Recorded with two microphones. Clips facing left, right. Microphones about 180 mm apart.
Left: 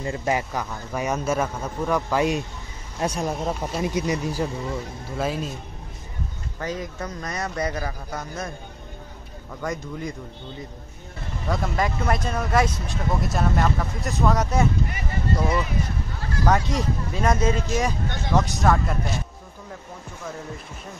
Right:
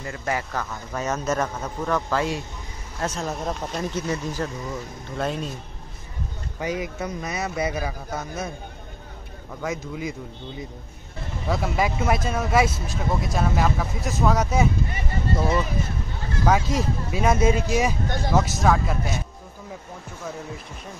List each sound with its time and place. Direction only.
0.0 s a man's voice: 20° left (ahead or behind); by 5.5 s 5° left (ahead or behind)
6.6 s a man's voice: 10° right (ahead or behind)
9.6 s speech: 5° right (ahead or behind)
11.4 s speech: 5° right (ahead or behind)
14.9 s speech: 25° right (ahead or behind)
16.4 s a man's voice: centre (ahead or behind)
18.0 s speech: 35° right (ahead or behind)
18.3 s speech: 5° right (ahead or behind)